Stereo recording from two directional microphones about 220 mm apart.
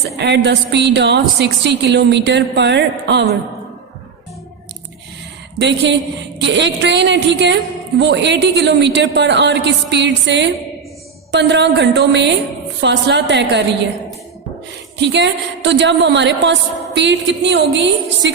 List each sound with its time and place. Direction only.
0.2 s a woman's voice: 50° right (ahead or behind)
5.5 s a woman's voice: 55° right (ahead or behind)
14.9 s a woman's voice: 50° right (ahead or behind)